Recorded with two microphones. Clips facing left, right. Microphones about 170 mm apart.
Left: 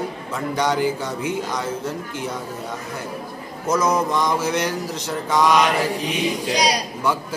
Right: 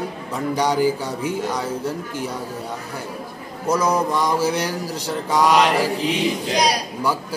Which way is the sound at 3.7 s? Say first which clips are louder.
Even; 30° right (ahead or behind).